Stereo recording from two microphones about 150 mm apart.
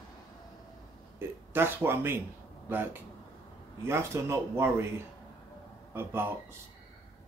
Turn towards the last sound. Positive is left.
turn(degrees=-15)  # may be behind; listen again after turning